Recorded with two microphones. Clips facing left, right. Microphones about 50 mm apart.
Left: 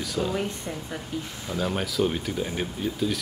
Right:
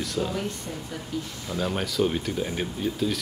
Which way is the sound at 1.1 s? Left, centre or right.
Left.